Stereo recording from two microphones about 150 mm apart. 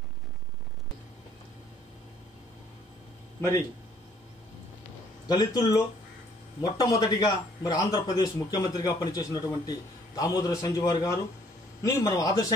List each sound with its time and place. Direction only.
3.3 s speech: 20° left (ahead or behind)
5.3 s a man's voice: 25° left (ahead or behind)